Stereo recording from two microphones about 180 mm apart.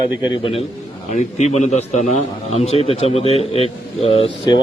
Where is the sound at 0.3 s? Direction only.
30° left (ahead or behind).